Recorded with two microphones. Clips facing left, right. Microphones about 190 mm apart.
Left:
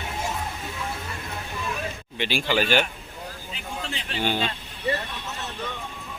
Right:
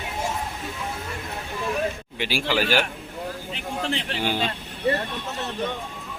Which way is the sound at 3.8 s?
65° right (ahead or behind).